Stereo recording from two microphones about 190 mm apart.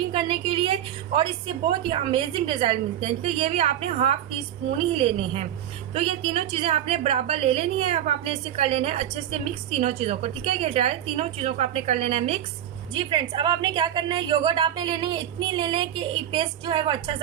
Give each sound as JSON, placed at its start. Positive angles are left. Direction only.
{"t": 0.1, "sound": "a woman's voice", "side_deg": -25}